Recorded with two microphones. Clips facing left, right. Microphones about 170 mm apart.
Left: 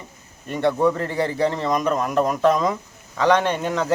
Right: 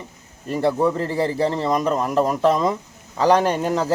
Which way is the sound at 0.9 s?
30° right (ahead or behind).